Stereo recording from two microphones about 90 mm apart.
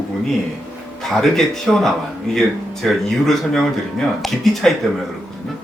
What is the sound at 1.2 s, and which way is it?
Speech, 5° left (ahead or behind).